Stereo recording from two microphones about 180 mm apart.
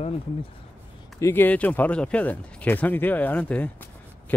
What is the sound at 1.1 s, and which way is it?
Speech, 15° left (ahead or behind).